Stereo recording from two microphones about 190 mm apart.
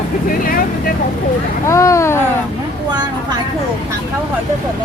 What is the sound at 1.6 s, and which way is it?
Speech, 15° left (ahead or behind).